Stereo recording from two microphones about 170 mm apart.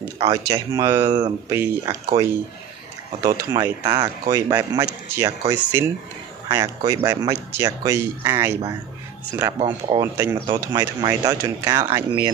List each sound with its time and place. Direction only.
0.0 s speech: 20° right (ahead or behind)
9.6 s speech: 30° right (ahead or behind)